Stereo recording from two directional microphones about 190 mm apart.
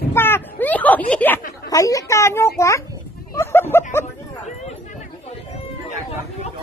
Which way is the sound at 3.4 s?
15° left (ahead or behind).